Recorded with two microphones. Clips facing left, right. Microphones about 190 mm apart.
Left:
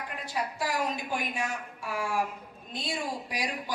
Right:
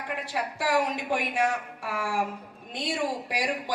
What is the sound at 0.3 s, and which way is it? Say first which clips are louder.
A woman's voice: right 4 dB; 70° right (ahead or behind).